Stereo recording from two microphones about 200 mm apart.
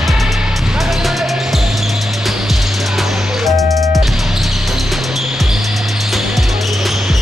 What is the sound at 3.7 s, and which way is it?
Music, 15° right (ahead or behind).